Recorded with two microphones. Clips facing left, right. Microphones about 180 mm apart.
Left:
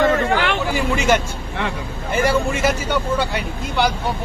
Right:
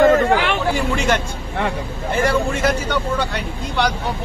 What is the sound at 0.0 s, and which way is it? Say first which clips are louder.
Hubbub: right 4 dB; 45° right (ahead or behind).